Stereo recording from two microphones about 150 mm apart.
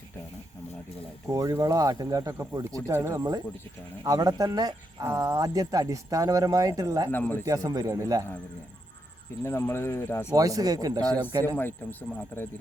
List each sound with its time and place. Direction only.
1.3 s speech: 20° right (ahead or behind)
7.1 s a man's voice: 15° left (ahead or behind)
7.4 s speech: 25° right (ahead or behind)
9.4 s a man's voice: 15° left (ahead or behind)
10.3 s speech: 25° right (ahead or behind)
11.4 s a man's voice: 10° left (ahead or behind)